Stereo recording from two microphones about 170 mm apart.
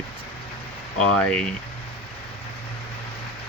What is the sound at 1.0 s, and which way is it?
Speech, 5° left (ahead or behind).